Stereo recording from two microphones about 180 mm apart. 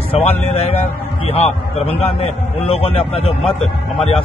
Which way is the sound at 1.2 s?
35° left (ahead or behind).